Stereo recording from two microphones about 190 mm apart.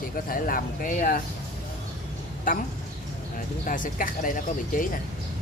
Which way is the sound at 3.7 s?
45° left (ahead or behind).